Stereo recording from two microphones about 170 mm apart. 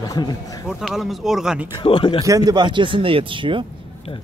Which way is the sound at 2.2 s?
20° right (ahead or behind).